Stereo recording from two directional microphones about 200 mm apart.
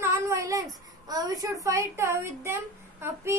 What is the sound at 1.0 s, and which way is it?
A child's voice, 20° right (ahead or behind).